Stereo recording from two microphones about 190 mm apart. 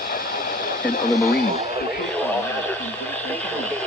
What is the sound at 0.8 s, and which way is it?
Speech, 45° left (ahead or behind).